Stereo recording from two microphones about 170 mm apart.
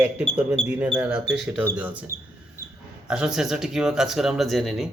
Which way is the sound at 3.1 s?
5° right (ahead or behind).